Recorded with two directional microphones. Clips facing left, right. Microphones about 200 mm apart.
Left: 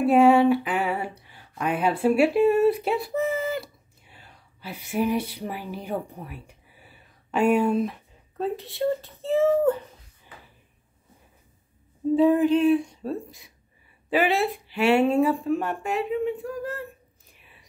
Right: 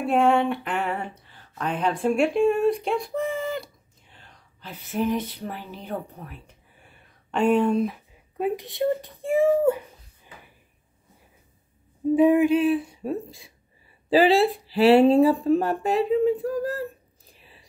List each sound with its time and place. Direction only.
0.0 s speech: 5° left (ahead or behind)
8.4 s speech: 15° right (ahead or behind)
12.2 s a sound: 15° right (ahead or behind)
14.1 s speech: 30° right (ahead or behind)
17.3 s whispering: 30° right (ahead or behind)